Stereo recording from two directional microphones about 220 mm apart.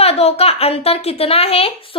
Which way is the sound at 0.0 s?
25° left (ahead or behind).